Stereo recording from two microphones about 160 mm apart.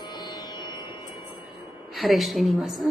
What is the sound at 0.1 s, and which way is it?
Music, 25° left (ahead or behind).